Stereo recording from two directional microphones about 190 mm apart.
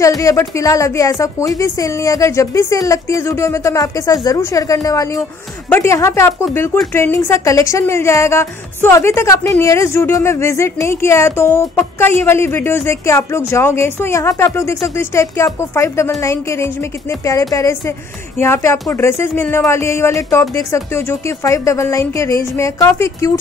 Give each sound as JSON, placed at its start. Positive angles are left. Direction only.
{"t": 0.2, "sound": "a woman's voice", "side_deg": 15}